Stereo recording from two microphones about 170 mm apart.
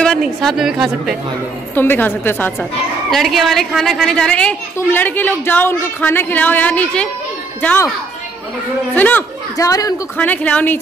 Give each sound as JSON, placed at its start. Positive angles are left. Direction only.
{"t": 0.0, "sound": "a woman's voice", "side_deg": 5}
{"t": 1.8, "sound": "a woman's voice", "side_deg": 10}
{"t": 3.1, "sound": "a woman's voice", "side_deg": 0}
{"t": 8.9, "sound": "a woman's voice", "side_deg": 10}
{"t": 10.1, "sound": "a woman's voice", "side_deg": 10}